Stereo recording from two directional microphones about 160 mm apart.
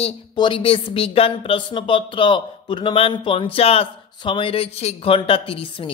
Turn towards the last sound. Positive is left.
turn(degrees=35)  # may be behind; listen again after turning